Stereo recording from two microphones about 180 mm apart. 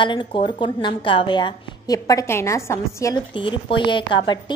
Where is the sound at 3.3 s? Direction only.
25° left (ahead or behind).